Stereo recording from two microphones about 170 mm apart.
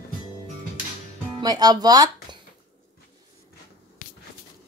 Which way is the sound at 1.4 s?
25° right (ahead or behind).